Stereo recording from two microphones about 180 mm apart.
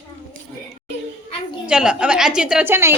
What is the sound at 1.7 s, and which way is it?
A woman's voice, 5° right (ahead or behind).